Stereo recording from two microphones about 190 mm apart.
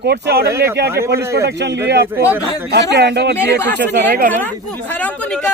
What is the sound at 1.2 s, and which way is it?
Speech, 15° right (ahead or behind).